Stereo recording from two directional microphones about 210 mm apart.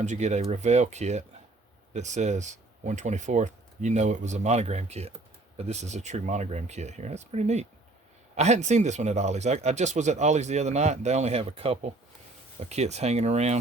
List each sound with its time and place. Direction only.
0.0 s speech: 35° right (ahead or behind)